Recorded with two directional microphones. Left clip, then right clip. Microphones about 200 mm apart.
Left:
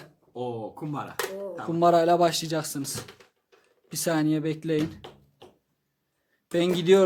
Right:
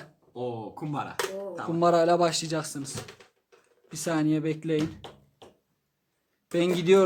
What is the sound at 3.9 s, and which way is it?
Speech, 20° left (ahead or behind).